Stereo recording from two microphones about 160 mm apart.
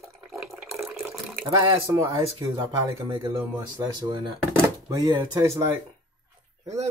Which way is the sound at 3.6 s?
20° right (ahead or behind).